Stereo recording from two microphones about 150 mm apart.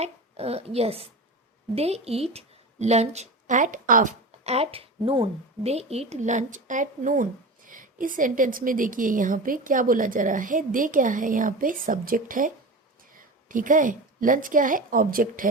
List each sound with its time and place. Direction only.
0.0 s a child's voice: 45° right (ahead or behind); by 4.1 s 65° right (ahead or behind)
4.3 s a woman's voice: 45° right (ahead or behind); by 12.5 s 65° right (ahead or behind)
13.5 s a woman's voice: 60° right (ahead or behind)